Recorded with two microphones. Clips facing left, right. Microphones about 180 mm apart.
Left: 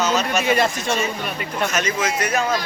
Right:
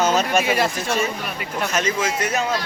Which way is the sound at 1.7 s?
30° right (ahead or behind).